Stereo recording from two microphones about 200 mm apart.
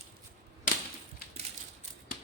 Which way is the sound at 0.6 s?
45° left (ahead or behind).